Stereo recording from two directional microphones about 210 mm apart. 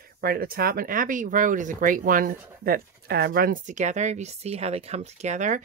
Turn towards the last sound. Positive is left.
turn(degrees=-35)  # may be behind; listen again after turning